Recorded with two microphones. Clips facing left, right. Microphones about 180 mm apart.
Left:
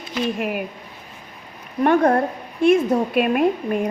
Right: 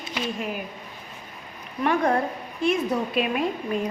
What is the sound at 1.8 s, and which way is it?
A woman's voice, 50° left (ahead or behind).